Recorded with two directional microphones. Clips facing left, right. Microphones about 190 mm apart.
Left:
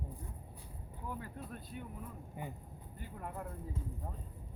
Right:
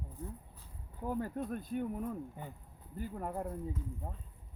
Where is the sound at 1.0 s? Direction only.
45° right (ahead or behind).